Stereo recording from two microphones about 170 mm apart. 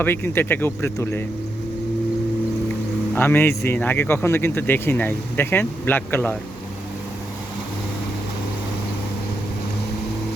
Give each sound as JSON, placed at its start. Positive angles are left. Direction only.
{"t": 0.0, "sound": "speech", "side_deg": 10}
{"t": 3.2, "sound": "speech", "side_deg": 10}